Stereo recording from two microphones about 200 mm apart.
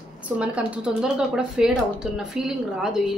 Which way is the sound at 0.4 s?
5° right (ahead or behind).